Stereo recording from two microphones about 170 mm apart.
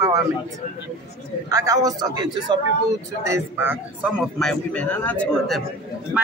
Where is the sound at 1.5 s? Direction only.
20° right (ahead or behind).